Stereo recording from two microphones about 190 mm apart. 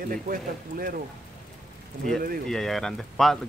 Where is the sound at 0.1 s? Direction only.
50° right (ahead or behind).